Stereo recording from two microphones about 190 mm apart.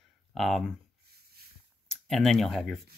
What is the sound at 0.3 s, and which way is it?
Speech, centre (ahead or behind).